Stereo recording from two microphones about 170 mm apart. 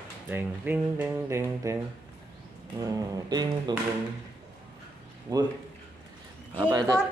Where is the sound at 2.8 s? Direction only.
20° right (ahead or behind).